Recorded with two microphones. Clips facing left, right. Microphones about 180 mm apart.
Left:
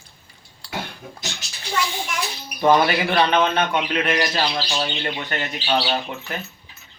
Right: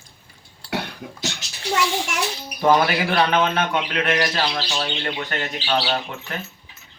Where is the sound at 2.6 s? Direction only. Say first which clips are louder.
Left 1 dB; 5° right (ahead or behind).